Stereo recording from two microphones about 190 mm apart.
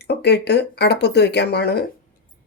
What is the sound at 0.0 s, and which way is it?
Speech, 60° left (ahead or behind).